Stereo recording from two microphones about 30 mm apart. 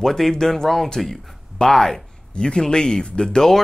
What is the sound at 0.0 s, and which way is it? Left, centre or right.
Speech, centre.